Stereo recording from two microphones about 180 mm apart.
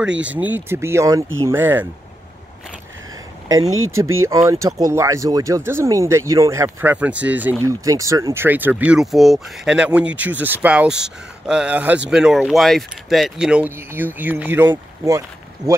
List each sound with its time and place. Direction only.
0.1 s speech: 90° right
0.4 s speech: 10° right (ahead or behind)
3.4 s speech: 20° right (ahead or behind)